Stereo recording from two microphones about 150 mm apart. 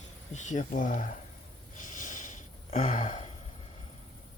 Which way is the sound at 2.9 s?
45° left (ahead or behind).